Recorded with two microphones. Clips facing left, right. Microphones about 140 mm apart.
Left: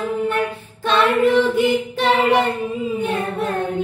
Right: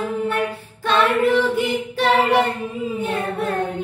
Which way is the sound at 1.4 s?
20° left (ahead or behind).